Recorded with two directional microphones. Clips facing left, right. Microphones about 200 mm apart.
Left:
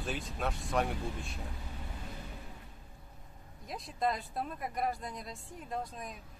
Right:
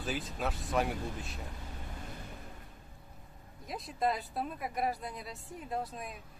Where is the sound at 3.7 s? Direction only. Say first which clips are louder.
Right 1 dB; centre (ahead or behind).